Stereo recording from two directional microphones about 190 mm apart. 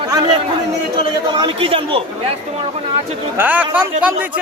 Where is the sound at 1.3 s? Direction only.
25° right (ahead or behind).